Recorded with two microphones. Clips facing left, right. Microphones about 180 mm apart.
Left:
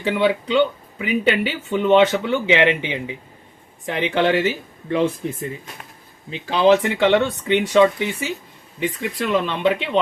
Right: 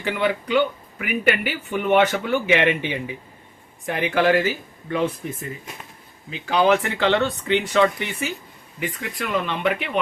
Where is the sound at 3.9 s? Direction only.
20° left (ahead or behind).